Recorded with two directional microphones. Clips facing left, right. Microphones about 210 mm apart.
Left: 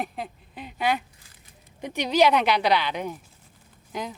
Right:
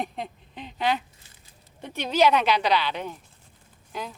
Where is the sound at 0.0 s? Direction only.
5° left (ahead or behind).